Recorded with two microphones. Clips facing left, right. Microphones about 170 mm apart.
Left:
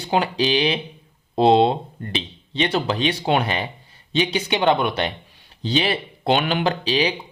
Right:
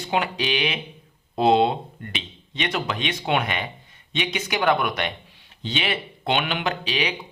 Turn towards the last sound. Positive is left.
turn(degrees=30)  # may be behind; listen again after turning